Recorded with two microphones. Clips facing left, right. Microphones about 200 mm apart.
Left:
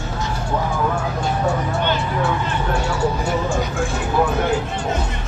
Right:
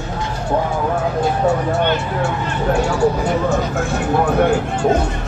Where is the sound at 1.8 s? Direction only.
50° right (ahead or behind).